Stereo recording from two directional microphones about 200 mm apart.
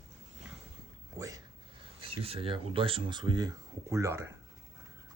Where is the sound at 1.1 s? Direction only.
15° right (ahead or behind).